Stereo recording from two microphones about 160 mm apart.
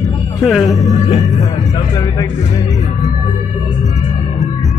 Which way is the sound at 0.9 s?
40° left (ahead or behind).